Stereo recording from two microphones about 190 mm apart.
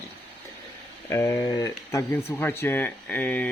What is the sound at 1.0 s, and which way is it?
Speech, 15° left (ahead or behind).